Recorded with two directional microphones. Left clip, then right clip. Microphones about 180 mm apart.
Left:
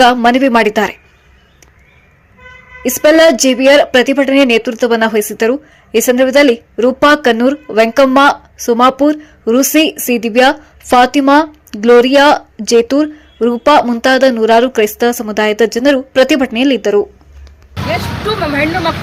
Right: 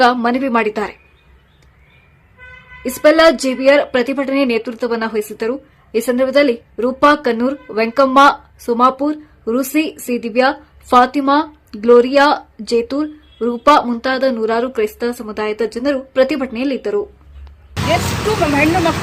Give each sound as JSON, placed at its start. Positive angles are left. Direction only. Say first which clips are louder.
{"t": 0.0, "sound": "a woman's voice", "louder": "left 5 dB", "side_deg": 20}
{"t": 2.8, "sound": "a woman's voice", "louder": "left 3 dB", "side_deg": 20}
{"t": 18.5, "sound": "speech", "louder": "even", "side_deg": 0}